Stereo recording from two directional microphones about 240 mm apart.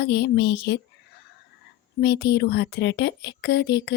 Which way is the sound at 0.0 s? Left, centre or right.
Left.